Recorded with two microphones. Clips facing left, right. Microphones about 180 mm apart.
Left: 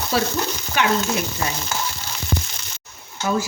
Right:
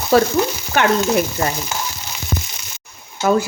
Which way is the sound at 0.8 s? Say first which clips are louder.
Right 5 dB; 55° right (ahead or behind).